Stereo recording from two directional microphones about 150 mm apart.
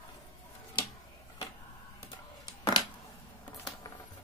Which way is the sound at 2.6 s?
25° left (ahead or behind).